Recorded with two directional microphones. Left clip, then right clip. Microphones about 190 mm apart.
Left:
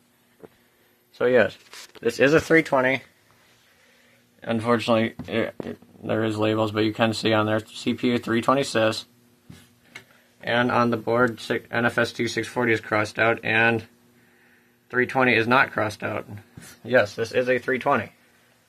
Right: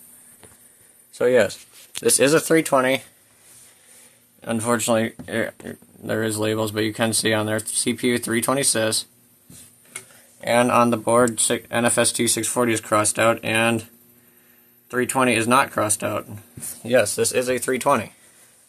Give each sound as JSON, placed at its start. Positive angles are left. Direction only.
{"t": 1.1, "sound": "speech", "side_deg": -10}
{"t": 4.4, "sound": "speech", "side_deg": -15}
{"t": 10.4, "sound": "speech", "side_deg": -35}
{"t": 14.9, "sound": "speech", "side_deg": -25}